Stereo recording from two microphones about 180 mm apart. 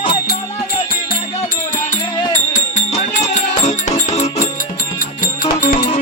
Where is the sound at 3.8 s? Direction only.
40° left (ahead or behind).